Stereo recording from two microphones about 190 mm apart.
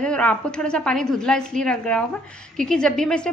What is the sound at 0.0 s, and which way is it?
A woman's voice, 5° left (ahead or behind).